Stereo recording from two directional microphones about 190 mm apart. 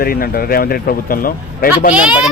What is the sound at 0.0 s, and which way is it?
A man's voice, 50° left (ahead or behind).